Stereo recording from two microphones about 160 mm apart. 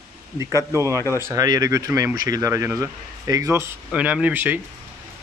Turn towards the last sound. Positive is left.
turn(degrees=-10)  # may be behind; listen again after turning